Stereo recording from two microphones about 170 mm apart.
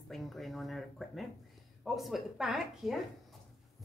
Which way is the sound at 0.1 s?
Centre (ahead or behind).